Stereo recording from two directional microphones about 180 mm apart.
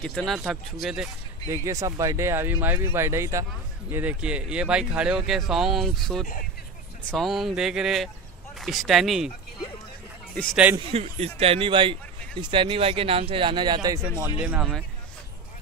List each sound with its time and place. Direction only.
0.0 s speech: 5° left (ahead or behind)
1.5 s speech: 15° right (ahead or behind)
10.3 s speech: 5° left (ahead or behind)
10.9 s speech: 35° right (ahead or behind)
14.4 s speech: 10° right (ahead or behind)